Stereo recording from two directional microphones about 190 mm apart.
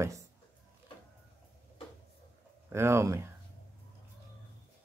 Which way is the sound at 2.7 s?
15° right (ahead or behind).